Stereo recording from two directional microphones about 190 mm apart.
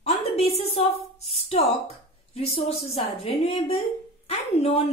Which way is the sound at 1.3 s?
35° left (ahead or behind).